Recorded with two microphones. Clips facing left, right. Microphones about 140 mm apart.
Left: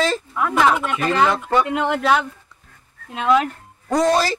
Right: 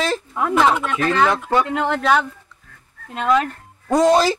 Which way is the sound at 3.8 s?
20° right (ahead or behind).